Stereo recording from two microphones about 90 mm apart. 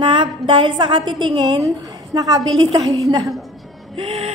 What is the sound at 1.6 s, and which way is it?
A woman's voice, 40° right (ahead or behind).